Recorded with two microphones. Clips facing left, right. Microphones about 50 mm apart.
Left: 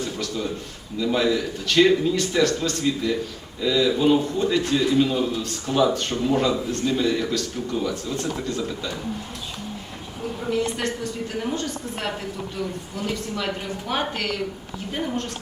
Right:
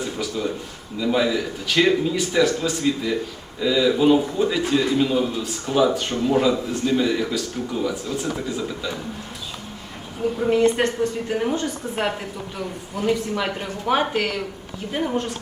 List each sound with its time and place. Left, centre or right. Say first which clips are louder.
0.0 s a sound: right 1 dB; centre
0.9 s a man's voice: right 1 dB; centre
10.5 s a woman's voice: right 6 dB; right
11.3 s a woman's voice: right 4 dB; right